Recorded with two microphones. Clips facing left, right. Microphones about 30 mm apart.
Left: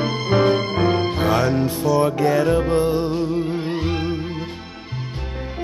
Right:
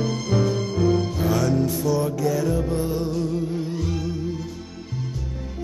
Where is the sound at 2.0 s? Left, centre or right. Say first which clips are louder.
Left 5 dB; left.